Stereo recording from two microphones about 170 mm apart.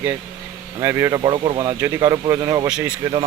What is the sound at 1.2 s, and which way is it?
Speech, 30° right (ahead or behind).